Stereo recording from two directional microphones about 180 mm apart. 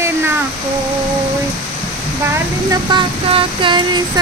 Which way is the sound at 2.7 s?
25° right (ahead or behind).